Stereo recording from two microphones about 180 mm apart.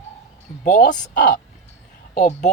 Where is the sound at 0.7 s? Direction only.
45° left (ahead or behind).